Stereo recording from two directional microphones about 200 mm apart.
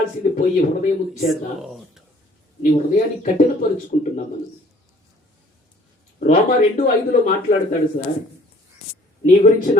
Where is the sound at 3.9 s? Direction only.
35° left (ahead or behind).